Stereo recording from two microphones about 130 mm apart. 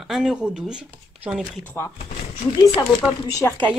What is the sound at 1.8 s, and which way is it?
Speech, 15° left (ahead or behind).